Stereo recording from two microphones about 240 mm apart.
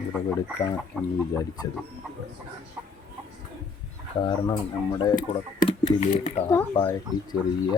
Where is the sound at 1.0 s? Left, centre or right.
Centre.